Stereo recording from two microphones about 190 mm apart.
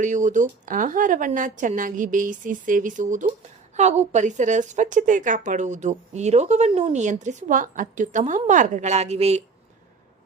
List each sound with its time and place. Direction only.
0.0 s a woman's voice: 40° right (ahead or behind)